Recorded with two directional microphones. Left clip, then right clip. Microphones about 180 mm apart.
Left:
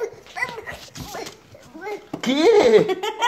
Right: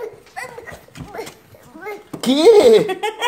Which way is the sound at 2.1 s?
35° right (ahead or behind).